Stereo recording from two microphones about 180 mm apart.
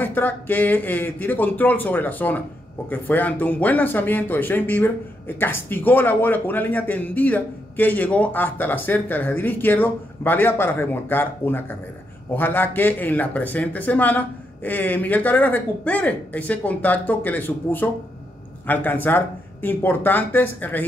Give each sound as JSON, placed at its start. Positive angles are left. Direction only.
{"t": 0.0, "sound": "a man's voice", "side_deg": 10}